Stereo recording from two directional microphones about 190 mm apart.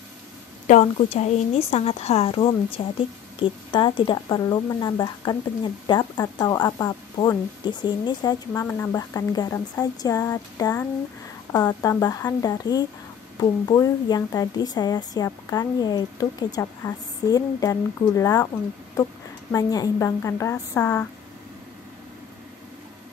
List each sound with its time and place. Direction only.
0.7 s a woman's voice: 40° left (ahead or behind); by 18.5 s 15° left (ahead or behind)
19.5 s a woman's voice: 20° left (ahead or behind)